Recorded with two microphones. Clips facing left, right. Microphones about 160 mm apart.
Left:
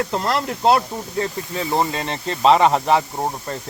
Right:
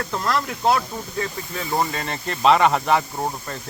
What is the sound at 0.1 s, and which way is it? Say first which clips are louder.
Speech: left 2 dB; 30° left (ahead or behind).